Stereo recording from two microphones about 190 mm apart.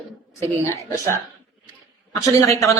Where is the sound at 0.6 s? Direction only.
15° left (ahead or behind).